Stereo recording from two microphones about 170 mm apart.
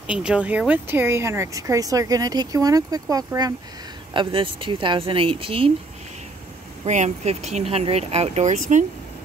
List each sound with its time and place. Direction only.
0.0 s speech: 5° right (ahead or behind); by 5.7 s 30° right (ahead or behind)
6.8 s speech: 40° right (ahead or behind)